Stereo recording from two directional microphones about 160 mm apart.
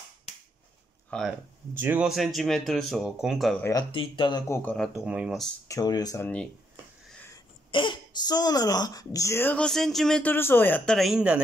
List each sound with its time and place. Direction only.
1.1 s speech: 5° left (ahead or behind)
1.8 s speech: 10° right (ahead or behind)
3.9 s speech: 30° left (ahead or behind)
4.6 s speech: 5° left (ahead or behind)
5.7 s speech: 25° left (ahead or behind)
6.2 s speech: 5° left (ahead or behind)
7.7 s speech: 30° left (ahead or behind); by 11.0 s 10° left (ahead or behind)
11.0 s speech: 5° right (ahead or behind)